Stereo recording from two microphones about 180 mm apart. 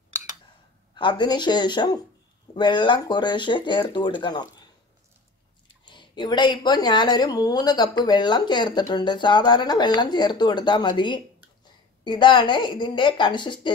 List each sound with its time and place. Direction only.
0.9 s speech: 25° left (ahead or behind)
5.9 s speech: 25° left (ahead or behind)